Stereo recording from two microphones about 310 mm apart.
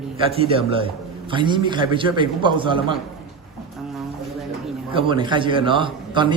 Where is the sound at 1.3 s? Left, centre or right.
Centre.